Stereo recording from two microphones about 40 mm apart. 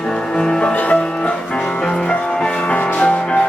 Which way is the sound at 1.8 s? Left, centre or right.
Centre.